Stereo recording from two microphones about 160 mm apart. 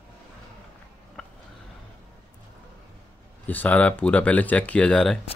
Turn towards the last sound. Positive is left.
turn(degrees=5)  # may be behind; listen again after turning